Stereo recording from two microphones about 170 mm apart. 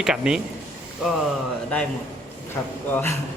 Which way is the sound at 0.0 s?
5° right (ahead or behind).